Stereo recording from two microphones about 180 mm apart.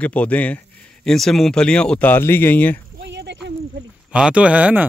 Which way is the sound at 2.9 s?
70° right (ahead or behind).